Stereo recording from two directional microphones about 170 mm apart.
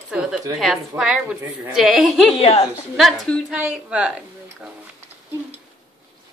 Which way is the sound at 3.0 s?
Centre (ahead or behind).